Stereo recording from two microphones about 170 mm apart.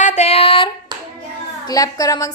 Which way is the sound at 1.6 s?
20° left (ahead or behind).